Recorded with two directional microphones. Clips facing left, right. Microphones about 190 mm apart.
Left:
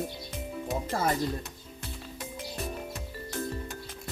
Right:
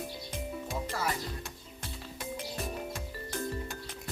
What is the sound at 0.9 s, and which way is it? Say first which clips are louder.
Speech: left 6 dB; 45° left (ahead or behind).